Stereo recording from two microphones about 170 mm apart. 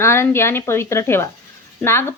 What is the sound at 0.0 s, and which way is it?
A woman's voice, 15° left (ahead or behind).